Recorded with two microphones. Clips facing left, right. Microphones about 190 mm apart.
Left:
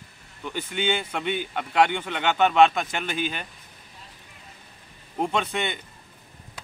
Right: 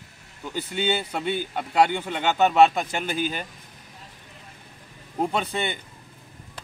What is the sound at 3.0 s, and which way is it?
Speech, 40° right (ahead or behind).